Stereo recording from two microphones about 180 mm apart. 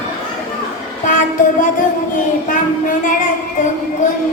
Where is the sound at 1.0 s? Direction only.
45° left (ahead or behind).